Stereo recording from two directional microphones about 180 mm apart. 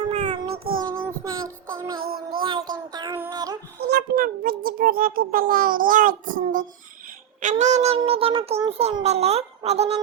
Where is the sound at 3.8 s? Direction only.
60° right (ahead or behind).